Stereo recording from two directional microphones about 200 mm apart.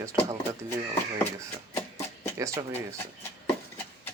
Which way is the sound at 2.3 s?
15° right (ahead or behind).